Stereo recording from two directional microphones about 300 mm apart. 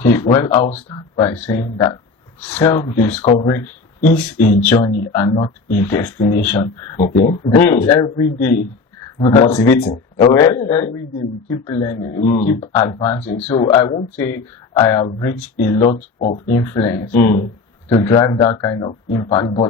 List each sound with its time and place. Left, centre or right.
0.0 s speech: centre
2.6 s speech: centre
7.0 s speech: left
7.5 s speech: centre
17.2 s speech: left
17.8 s speech: centre